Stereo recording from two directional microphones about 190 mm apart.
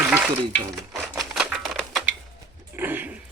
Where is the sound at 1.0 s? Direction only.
Centre (ahead or behind).